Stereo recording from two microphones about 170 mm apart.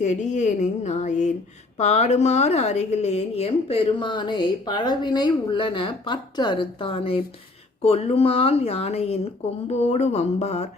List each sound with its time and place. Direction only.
0.0 s a woman's voice: 40° left (ahead or behind)